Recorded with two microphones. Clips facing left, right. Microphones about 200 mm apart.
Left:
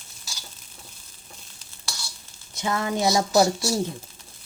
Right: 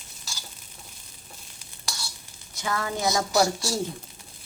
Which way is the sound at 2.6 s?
25° left (ahead or behind).